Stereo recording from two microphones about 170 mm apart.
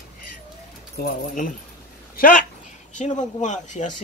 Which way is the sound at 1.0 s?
55° left (ahead or behind).